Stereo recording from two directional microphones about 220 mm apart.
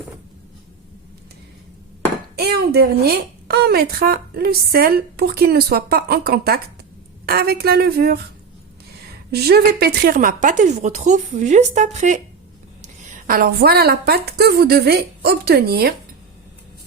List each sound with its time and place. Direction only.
2.3 s a woman's voice: 45° right (ahead or behind)
9.3 s a woman's voice: 45° right (ahead or behind)